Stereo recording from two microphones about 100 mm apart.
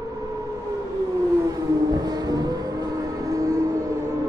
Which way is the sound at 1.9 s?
40° right (ahead or behind).